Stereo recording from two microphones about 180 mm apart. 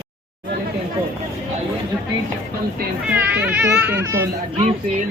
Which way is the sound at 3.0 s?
10° right (ahead or behind).